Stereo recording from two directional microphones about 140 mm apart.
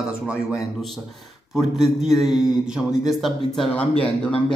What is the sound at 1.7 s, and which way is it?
Speech, centre (ahead or behind).